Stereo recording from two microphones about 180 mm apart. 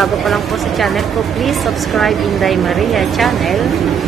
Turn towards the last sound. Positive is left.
turn(degrees=0)  # may be behind; listen again after turning